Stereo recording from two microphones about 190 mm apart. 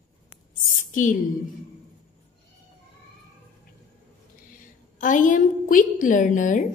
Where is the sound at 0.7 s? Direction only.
45° left (ahead or behind).